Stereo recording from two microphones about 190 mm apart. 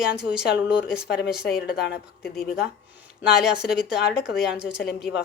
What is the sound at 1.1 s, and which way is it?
Speech, 60° left (ahead or behind).